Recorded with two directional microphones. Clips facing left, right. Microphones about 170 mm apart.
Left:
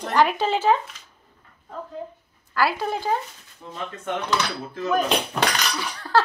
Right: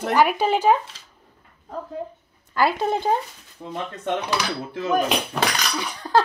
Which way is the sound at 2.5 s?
20° right (ahead or behind).